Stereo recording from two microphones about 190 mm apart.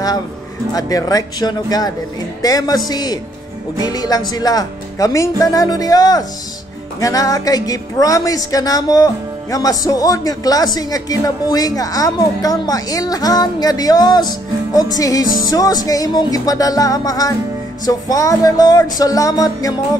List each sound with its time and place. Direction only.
0.7 s a woman's voice: 20° left (ahead or behind)